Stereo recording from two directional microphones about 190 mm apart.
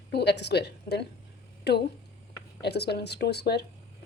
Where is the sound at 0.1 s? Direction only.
60° left (ahead or behind).